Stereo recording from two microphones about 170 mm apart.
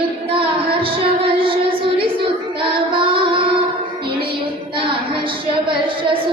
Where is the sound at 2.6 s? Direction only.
30° right (ahead or behind).